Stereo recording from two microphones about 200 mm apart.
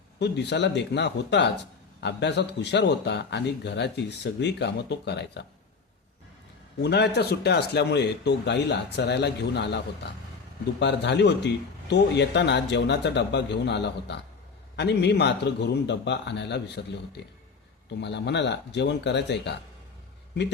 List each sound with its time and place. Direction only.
0.2 s a man's voice: 60° left (ahead or behind)
6.8 s a man's voice: 55° left (ahead or behind)